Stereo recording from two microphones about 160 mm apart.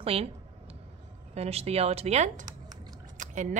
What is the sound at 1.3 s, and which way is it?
A woman's voice, 40° right (ahead or behind).